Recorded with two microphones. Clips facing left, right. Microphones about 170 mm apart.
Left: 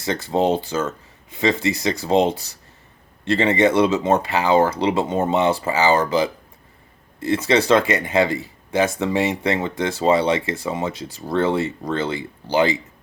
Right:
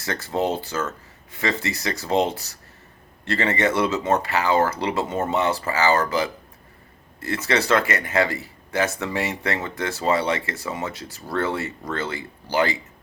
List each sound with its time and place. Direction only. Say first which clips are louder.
0.0 s speech: left 5 dB; 20° left (ahead or behind)